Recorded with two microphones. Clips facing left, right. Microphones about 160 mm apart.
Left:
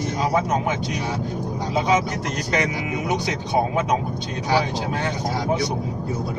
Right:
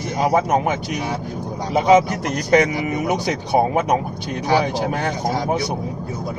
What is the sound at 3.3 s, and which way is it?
Speech, 55° right (ahead or behind).